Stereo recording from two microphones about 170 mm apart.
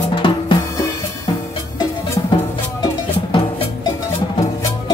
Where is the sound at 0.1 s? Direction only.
30° left (ahead or behind).